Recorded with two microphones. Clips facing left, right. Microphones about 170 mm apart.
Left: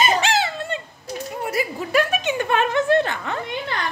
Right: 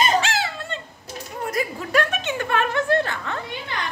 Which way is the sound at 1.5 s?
5° left (ahead or behind).